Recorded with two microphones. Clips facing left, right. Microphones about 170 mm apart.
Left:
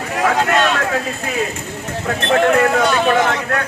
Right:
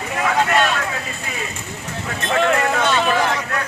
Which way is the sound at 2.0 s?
50° left (ahead or behind).